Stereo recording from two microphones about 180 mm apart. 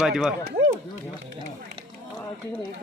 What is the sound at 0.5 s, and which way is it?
Run, 60° right (ahead or behind).